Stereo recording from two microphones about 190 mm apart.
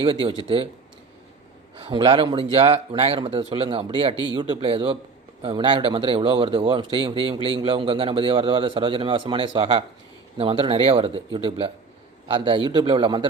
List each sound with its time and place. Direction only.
0.0 s speech: 30° right (ahead or behind)
1.8 s speech: 25° right (ahead or behind)